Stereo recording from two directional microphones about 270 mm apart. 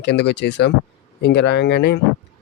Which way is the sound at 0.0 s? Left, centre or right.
Left.